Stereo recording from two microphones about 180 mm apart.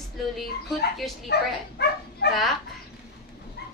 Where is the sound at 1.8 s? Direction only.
65° left (ahead or behind).